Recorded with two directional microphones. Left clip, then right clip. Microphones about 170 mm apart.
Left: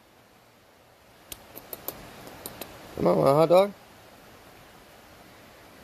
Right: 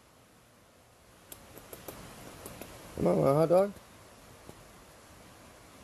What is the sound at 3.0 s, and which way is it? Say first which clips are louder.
Speech: left 6 dB; 15° left (ahead or behind).